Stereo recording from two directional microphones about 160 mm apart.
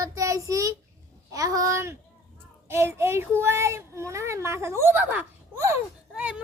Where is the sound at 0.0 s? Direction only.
20° right (ahead or behind).